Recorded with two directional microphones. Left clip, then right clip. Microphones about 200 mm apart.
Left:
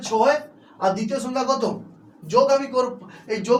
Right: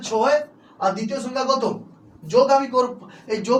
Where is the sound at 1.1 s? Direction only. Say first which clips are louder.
Right 1 dB; centre (ahead or behind).